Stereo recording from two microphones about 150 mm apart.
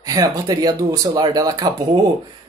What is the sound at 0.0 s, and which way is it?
Speech, 25° right (ahead or behind).